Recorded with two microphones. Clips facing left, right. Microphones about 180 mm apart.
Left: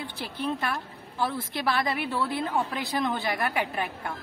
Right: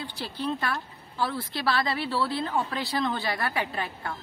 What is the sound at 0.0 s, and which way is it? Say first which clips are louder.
A woman's voice: even; 20° left (ahead or behind).